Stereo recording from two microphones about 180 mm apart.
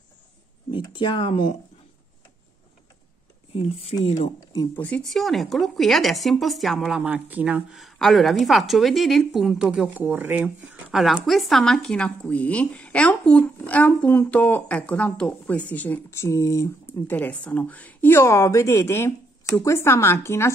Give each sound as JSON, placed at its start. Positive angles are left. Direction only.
{"t": 0.7, "sound": "speech", "side_deg": 25}
{"t": 3.5, "sound": "speech", "side_deg": 35}
{"t": 4.7, "sound": "speech", "side_deg": 5}